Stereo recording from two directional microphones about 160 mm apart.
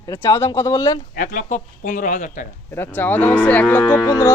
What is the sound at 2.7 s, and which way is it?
Cattle, 15° left (ahead or behind).